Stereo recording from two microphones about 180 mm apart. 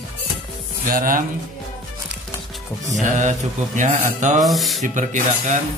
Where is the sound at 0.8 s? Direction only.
50° right (ahead or behind).